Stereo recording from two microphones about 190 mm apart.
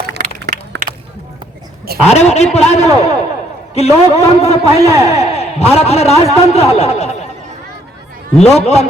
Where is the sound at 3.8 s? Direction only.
35° left (ahead or behind).